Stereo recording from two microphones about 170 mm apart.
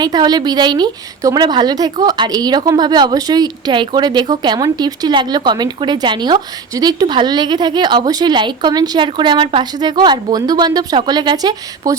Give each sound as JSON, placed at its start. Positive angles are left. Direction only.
{"t": 0.0, "sound": "a woman's voice", "side_deg": -25}